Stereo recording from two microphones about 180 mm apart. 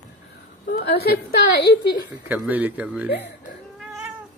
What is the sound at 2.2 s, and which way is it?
Speech, 10° right (ahead or behind).